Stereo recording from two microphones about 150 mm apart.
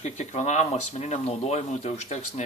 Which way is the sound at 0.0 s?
50° left (ahead or behind).